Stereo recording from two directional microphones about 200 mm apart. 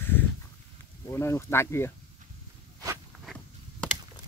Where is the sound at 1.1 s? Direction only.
15° left (ahead or behind).